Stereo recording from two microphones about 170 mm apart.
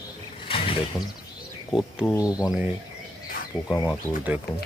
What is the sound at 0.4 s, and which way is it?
Mechanisms, 35° left (ahead or behind).